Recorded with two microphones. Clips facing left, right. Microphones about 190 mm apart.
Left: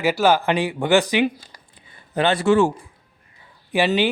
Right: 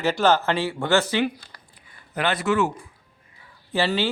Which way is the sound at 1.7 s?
25° left (ahead or behind).